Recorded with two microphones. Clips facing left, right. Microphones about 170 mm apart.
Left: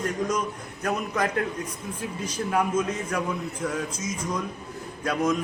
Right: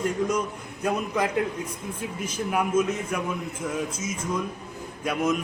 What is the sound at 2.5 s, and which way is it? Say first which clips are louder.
A man's voice: right 1 dB; 10° right (ahead or behind).